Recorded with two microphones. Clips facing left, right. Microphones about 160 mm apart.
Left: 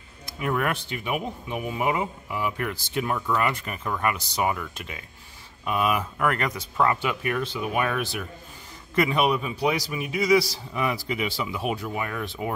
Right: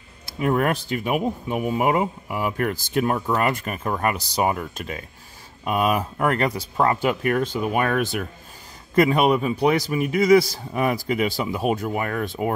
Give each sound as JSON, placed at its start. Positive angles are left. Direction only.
{"t": 0.4, "sound": "speech", "side_deg": -35}